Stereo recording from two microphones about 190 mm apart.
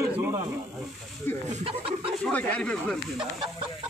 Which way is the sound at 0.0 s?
15° right (ahead or behind).